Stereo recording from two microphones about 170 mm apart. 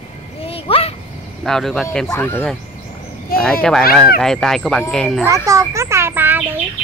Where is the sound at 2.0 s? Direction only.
15° left (ahead or behind).